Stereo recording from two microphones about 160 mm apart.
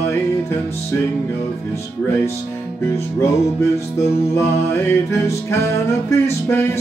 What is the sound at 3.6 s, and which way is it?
Music, 15° left (ahead or behind).